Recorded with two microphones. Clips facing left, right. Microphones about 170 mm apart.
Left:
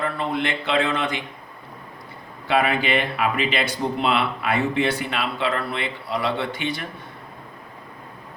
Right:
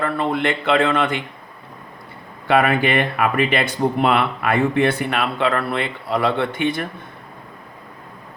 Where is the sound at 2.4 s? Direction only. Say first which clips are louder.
Right 4 dB; 55° right (ahead or behind).